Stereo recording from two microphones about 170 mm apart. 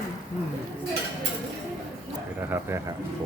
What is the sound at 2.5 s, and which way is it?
Speech, 15° right (ahead or behind).